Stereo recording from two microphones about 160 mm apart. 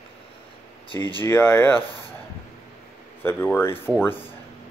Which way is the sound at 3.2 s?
15° left (ahead or behind).